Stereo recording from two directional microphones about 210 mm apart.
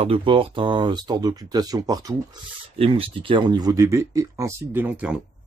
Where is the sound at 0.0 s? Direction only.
25° right (ahead or behind).